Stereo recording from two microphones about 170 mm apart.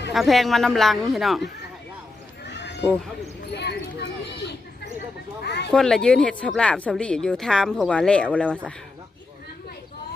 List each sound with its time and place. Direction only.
0.1 s a woman's voice: centre (ahead or behind)
2.4 s horse: 90° left
3.5 s speech: 85° left
5.4 s speech: 85° left
5.7 s a woman's voice: 5° left (ahead or behind)